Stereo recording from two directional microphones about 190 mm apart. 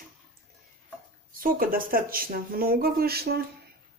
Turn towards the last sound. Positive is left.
turn(degrees=-55)  # may be behind; listen again after turning